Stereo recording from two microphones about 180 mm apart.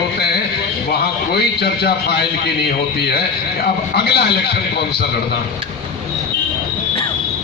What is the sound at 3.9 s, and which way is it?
Speech, 65° left (ahead or behind).